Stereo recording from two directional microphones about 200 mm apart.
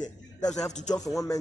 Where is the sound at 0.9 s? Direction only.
15° left (ahead or behind).